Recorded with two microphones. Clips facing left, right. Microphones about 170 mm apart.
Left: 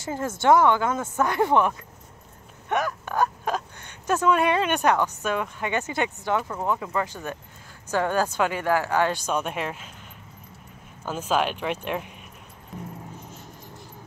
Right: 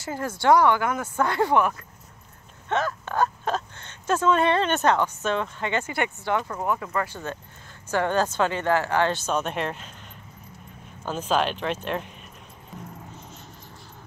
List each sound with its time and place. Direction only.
0.0 s speech: 20° left (ahead or behind)
2.7 s speech: 15° left (ahead or behind)
11.1 s speech: 10° left (ahead or behind)